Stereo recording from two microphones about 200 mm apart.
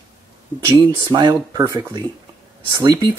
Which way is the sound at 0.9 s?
20° right (ahead or behind).